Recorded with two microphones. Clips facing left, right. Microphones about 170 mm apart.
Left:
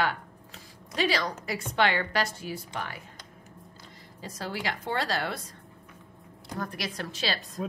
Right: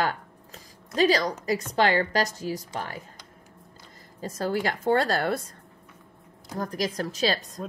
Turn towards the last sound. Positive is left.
turn(degrees=-40)  # may be behind; listen again after turning